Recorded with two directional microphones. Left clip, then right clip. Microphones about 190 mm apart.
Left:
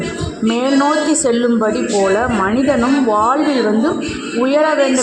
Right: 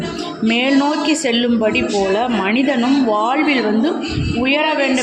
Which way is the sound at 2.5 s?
Centre (ahead or behind).